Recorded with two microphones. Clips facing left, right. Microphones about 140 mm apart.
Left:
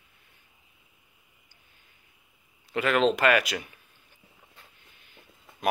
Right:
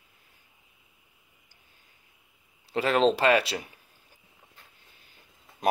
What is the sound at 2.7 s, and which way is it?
Speech, 30° right (ahead or behind).